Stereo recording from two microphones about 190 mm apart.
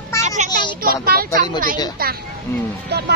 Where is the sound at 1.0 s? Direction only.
50° right (ahead or behind).